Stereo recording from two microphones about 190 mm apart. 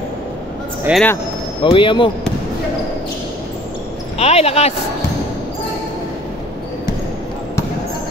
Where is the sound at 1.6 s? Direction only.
25° left (ahead or behind).